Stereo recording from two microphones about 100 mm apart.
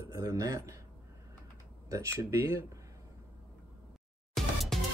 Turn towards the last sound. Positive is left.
turn(degrees=5)  # may be behind; listen again after turning